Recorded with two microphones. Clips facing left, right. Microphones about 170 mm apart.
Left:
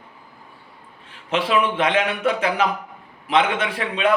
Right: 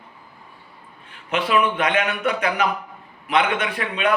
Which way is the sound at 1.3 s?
30° left (ahead or behind).